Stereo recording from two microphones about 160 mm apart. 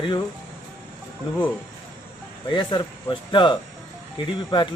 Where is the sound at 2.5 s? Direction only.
30° left (ahead or behind).